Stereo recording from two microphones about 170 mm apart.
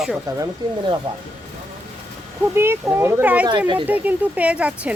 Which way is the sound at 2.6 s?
15° right (ahead or behind).